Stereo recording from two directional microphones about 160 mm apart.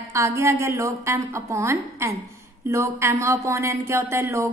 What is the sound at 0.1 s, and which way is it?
Speech, 20° right (ahead or behind).